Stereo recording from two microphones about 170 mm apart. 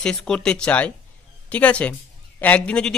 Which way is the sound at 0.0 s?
5° left (ahead or behind).